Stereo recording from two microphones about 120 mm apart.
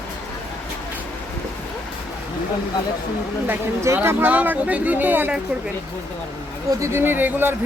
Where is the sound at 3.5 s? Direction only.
20° right (ahead or behind).